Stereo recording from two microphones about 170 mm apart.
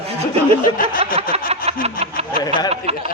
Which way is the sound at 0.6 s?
55° left (ahead or behind).